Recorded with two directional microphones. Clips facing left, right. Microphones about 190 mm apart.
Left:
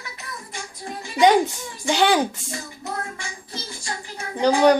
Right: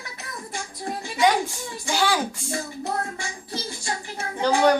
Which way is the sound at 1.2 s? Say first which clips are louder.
Left 5 dB; 20° left (ahead or behind).